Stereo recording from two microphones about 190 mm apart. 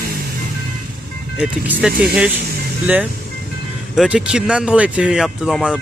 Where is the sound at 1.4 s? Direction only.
5° right (ahead or behind).